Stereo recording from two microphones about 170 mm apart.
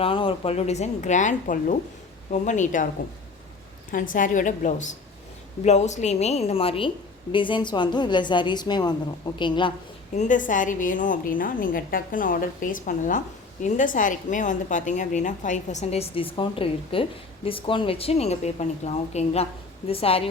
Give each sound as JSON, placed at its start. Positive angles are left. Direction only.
{"t": 0.0, "sound": "a woman's voice", "side_deg": 30}
{"t": 3.9, "sound": "a woman's voice", "side_deg": 50}
{"t": 10.2, "sound": "a woman's voice", "side_deg": 50}